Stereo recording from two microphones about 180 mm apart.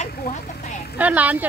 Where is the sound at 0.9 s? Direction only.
10° right (ahead or behind).